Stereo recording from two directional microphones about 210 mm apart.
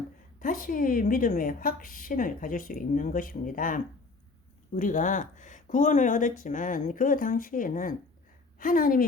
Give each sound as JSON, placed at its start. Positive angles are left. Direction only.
{"t": 0.3, "sound": "a woman's voice", "side_deg": 40}